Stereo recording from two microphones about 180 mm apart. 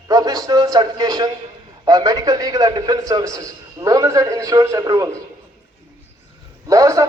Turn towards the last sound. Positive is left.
turn(degrees=-20)  # may be behind; listen again after turning